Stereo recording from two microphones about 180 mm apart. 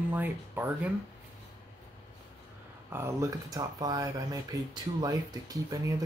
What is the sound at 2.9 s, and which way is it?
Speech, 15° right (ahead or behind).